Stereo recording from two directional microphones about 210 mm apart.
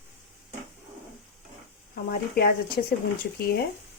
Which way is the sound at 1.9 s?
45° left (ahead or behind).